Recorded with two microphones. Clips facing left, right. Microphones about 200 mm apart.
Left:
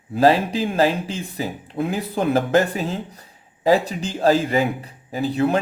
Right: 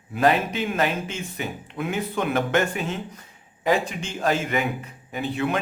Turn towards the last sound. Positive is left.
turn(degrees=35)  # may be behind; listen again after turning